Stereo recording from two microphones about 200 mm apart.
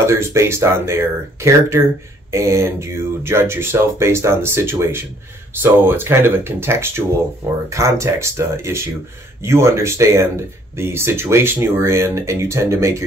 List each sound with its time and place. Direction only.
0.0 s speech: 15° right (ahead or behind)